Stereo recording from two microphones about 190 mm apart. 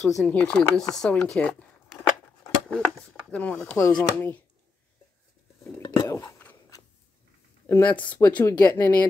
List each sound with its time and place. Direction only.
0.0 s speech: 5° left (ahead or behind)
3.3 s speech: 5° left (ahead or behind)
5.6 s chewing: 20° left (ahead or behind)
7.6 s speech: 15° left (ahead or behind)